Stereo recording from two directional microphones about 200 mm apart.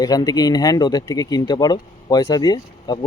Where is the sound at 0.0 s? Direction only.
20° left (ahead or behind).